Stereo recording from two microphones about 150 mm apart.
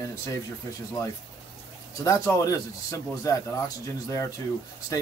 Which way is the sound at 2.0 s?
20° left (ahead or behind).